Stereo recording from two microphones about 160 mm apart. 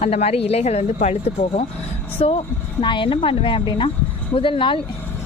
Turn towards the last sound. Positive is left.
turn(degrees=30)  # may be behind; listen again after turning